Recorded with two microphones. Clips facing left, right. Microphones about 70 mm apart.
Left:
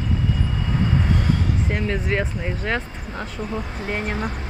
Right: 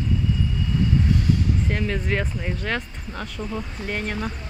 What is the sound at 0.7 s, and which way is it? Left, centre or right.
Vehicle, left.